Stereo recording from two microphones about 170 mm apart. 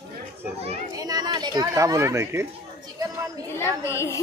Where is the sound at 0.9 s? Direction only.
20° right (ahead or behind).